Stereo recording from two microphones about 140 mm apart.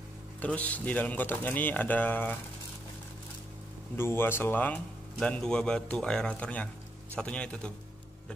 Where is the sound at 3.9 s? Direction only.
15° left (ahead or behind).